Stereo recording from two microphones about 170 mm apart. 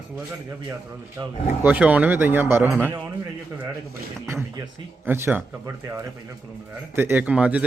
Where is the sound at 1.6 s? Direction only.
10° right (ahead or behind).